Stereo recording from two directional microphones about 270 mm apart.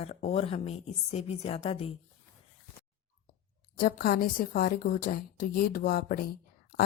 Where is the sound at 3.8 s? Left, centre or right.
Left.